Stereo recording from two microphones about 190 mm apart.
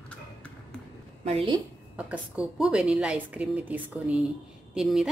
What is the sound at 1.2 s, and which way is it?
Speech, 35° right (ahead or behind).